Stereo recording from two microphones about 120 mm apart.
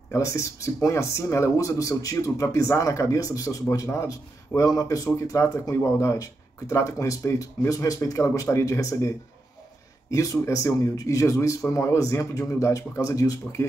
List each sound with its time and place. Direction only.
0.1 s speech: 25° left (ahead or behind)
10.1 s speech: 25° left (ahead or behind)